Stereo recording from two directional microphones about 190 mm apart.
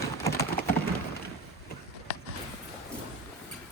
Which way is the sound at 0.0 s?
15° left (ahead or behind).